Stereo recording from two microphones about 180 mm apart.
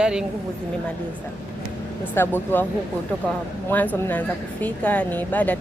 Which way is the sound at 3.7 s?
10° left (ahead or behind).